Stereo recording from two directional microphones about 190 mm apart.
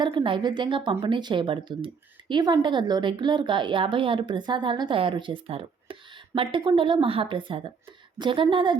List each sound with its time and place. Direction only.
0.0 s a woman's voice: 25° right (ahead or behind)